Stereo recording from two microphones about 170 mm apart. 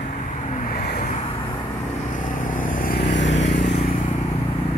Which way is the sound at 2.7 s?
60° left (ahead or behind).